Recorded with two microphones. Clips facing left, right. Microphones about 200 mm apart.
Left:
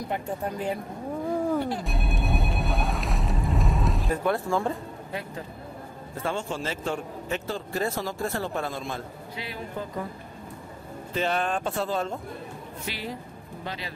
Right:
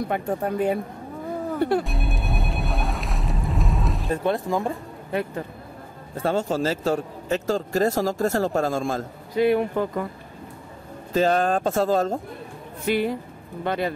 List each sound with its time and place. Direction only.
0.1 s speech: 55° right (ahead or behind)
1.9 s boat: centre (ahead or behind)
4.1 s speech: 20° right (ahead or behind)
6.2 s speech: 40° right (ahead or behind); by 9.8 s 60° right (ahead or behind)
11.1 s speech: 40° right (ahead or behind)
12.8 s speech: 55° right (ahead or behind)